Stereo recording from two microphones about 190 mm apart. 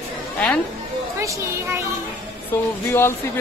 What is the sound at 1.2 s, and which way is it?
Speech, 15° right (ahead or behind).